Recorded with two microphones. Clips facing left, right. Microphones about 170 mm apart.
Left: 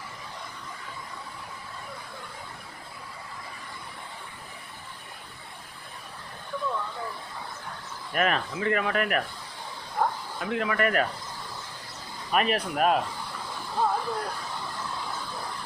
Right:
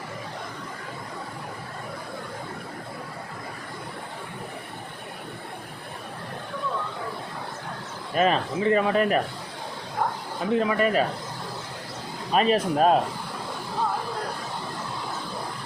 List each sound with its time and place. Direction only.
8.1 s speech: 25° right (ahead or behind)
10.4 s speech: 30° right (ahead or behind)
12.3 s speech: 25° right (ahead or behind)